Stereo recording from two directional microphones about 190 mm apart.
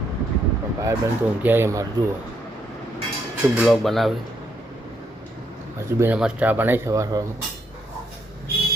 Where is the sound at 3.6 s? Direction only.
Centre (ahead or behind).